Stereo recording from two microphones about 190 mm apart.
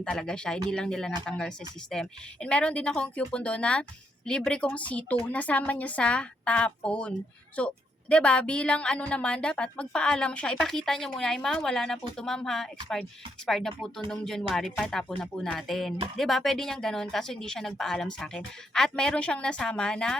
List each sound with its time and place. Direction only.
0.0 s a woman's voice: 5° left (ahead or behind)